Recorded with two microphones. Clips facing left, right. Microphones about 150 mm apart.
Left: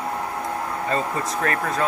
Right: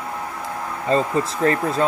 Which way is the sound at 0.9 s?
30° right (ahead or behind).